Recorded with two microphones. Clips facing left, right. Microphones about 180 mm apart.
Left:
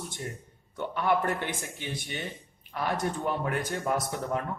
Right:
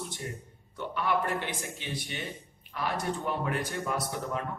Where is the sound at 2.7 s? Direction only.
45° left (ahead or behind).